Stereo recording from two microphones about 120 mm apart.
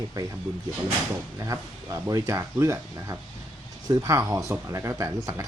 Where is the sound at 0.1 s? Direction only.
30° right (ahead or behind).